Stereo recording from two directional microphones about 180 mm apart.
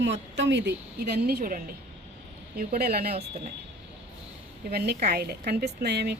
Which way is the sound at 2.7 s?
60° right (ahead or behind).